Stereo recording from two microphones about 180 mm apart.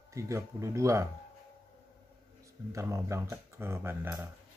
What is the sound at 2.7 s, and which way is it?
Speech, 15° right (ahead or behind).